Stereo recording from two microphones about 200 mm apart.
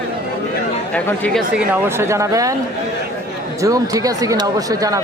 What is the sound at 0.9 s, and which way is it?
Speech, 5° left (ahead or behind).